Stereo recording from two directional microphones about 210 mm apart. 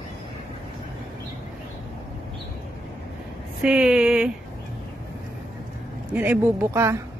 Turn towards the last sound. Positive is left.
turn(degrees=-15)  # may be behind; listen again after turning